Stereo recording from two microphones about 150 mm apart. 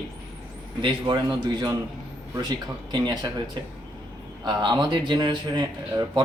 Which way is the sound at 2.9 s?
30° right (ahead or behind).